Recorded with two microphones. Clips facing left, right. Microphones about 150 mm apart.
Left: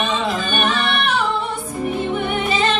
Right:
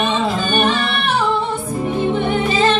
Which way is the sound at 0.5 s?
30° right (ahead or behind).